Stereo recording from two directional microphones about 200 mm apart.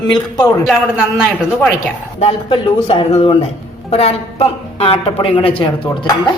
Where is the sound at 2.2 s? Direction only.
25° left (ahead or behind).